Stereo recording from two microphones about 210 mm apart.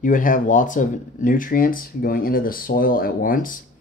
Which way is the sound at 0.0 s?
40° left (ahead or behind).